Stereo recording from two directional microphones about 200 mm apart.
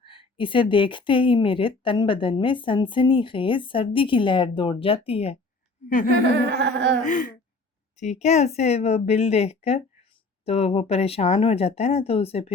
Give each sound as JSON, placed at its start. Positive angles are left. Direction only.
{"t": 0.0, "sound": "a woman's voice", "side_deg": 25}
{"t": 6.2, "sound": "a sound", "side_deg": -55}
{"t": 7.0, "sound": "a woman's voice", "side_deg": 40}